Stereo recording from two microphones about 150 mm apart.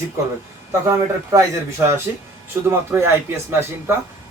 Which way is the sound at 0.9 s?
20° right (ahead or behind).